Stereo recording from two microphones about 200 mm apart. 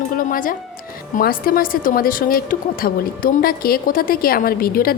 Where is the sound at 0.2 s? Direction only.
45° left (ahead or behind).